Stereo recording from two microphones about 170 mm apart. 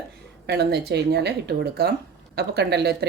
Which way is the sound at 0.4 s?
75° right (ahead or behind).